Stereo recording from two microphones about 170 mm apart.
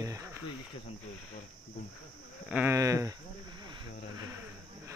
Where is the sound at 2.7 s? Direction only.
20° right (ahead or behind).